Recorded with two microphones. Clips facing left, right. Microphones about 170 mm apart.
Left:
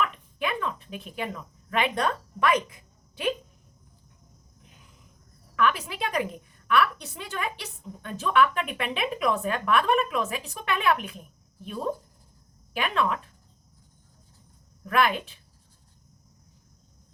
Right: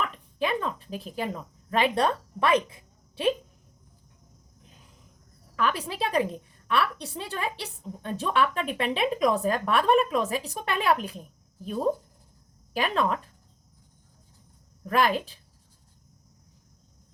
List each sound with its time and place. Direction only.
0.0 s a sound: 35° right (ahead or behind)
5.5 s a woman's voice: 35° right (ahead or behind)
14.8 s a woman's voice: 35° right (ahead or behind)